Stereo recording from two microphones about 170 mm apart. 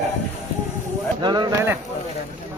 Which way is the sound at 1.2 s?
25° right (ahead or behind).